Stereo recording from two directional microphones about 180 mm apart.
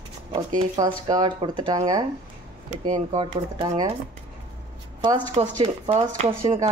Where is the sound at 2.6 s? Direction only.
40° right (ahead or behind).